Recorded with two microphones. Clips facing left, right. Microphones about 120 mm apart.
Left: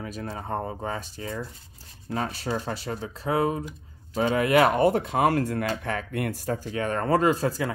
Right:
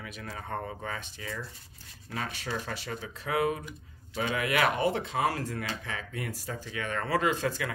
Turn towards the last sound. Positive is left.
turn(degrees=35)  # may be behind; listen again after turning